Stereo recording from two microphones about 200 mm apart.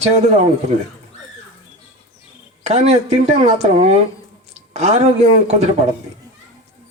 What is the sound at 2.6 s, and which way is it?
Speech, 30° right (ahead or behind).